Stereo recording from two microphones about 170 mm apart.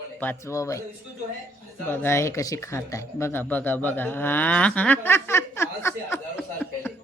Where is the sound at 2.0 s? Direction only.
15° left (ahead or behind).